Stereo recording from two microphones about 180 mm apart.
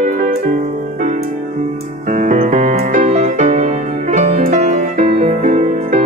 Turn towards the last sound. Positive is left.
turn(degrees=-45)  # may be behind; listen again after turning